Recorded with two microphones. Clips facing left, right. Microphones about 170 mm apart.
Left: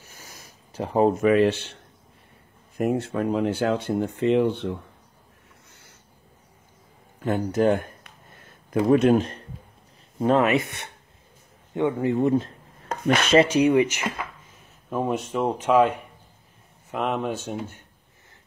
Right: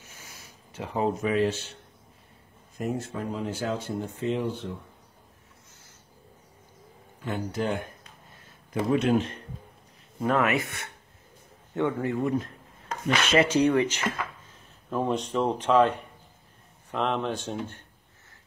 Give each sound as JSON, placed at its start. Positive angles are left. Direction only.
{"t": 0.0, "sound": "a sound", "side_deg": 40}
{"t": 1.0, "sound": "speech", "side_deg": 60}
{"t": 2.8, "sound": "speech", "side_deg": 65}
{"t": 7.2, "sound": "speech", "side_deg": 45}
{"t": 10.2, "sound": "speech", "side_deg": 25}
{"t": 13.0, "sound": "a sound", "side_deg": 50}
{"t": 13.5, "sound": "speech", "side_deg": 10}